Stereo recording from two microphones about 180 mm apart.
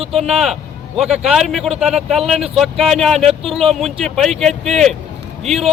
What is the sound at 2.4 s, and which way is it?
Speech, 35° right (ahead or behind).